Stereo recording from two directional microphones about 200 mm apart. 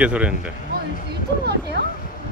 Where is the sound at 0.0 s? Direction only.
5° right (ahead or behind).